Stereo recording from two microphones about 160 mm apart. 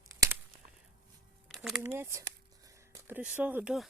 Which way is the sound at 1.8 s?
15° right (ahead or behind).